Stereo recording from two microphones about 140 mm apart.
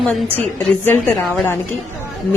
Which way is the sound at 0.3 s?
10° left (ahead or behind).